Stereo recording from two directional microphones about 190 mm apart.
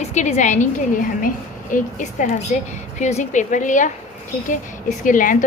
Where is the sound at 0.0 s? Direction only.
35° left (ahead or behind).